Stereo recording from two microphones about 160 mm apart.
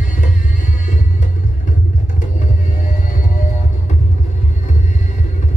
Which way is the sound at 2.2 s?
55° left (ahead or behind).